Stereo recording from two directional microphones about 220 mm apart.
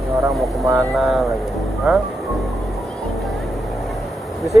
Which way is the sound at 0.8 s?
Centre (ahead or behind).